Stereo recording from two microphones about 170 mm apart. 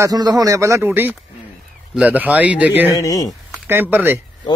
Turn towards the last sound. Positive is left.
turn(degrees=-10)  # may be behind; listen again after turning